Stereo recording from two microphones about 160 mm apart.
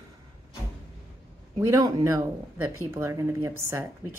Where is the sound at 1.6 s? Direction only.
20° right (ahead or behind).